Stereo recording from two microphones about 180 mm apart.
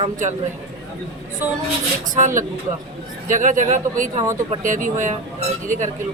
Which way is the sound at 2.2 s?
45° right (ahead or behind).